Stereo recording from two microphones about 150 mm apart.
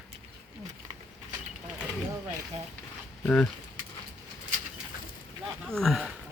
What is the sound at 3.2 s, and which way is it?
Speech, 10° left (ahead or behind).